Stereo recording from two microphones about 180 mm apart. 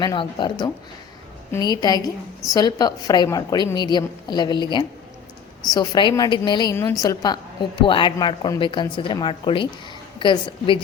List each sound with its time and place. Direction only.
0.0 s a woman's voice: 25° left (ahead or behind)
1.5 s a woman's voice: 20° left (ahead or behind)